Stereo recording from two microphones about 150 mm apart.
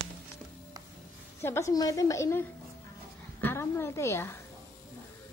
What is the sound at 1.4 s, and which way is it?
A woman's voice, 20° left (ahead or behind).